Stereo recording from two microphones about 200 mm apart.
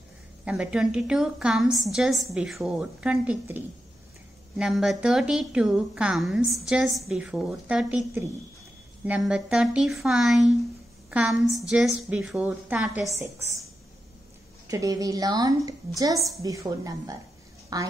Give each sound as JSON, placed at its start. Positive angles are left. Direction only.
{"t": 0.5, "sound": "a woman's voice", "side_deg": -5}
{"t": 14.7, "sound": "a woman's voice", "side_deg": -15}